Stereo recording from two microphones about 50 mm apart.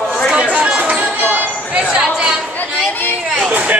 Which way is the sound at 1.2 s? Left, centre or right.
Right.